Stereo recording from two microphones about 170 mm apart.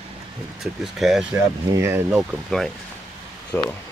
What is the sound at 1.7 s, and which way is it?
Speech, 15° right (ahead or behind).